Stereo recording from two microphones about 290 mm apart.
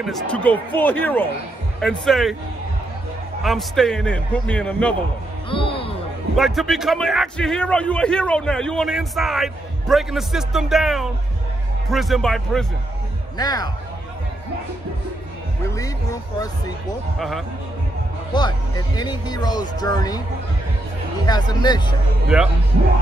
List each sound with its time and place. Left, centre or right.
0.0 s a man's voice: centre
3.4 s a man's voice: centre
5.5 s music: centre
6.3 s a man's voice: centre
13.4 s speech: centre
15.6 s speech: centre
18.3 s speech: centre
21.3 s speech: centre